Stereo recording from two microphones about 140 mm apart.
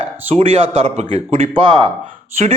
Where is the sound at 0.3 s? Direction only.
50° right (ahead or behind); by 1.9 s 35° right (ahead or behind).